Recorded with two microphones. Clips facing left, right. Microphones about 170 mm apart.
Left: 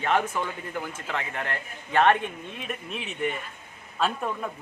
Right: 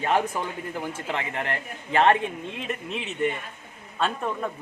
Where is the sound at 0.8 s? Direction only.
30° right (ahead or behind).